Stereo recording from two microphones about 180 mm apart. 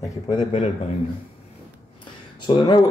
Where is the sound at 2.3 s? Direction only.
25° left (ahead or behind).